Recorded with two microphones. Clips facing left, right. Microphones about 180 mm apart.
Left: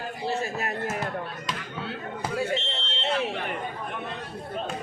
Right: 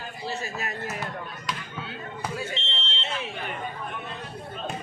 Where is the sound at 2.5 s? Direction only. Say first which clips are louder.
Left 6 dB; 45° left (ahead or behind).